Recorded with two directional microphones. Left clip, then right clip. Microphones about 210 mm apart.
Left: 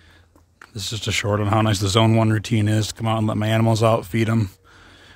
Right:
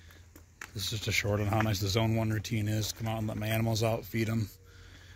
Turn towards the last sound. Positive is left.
turn(degrees=50)  # may be behind; listen again after turning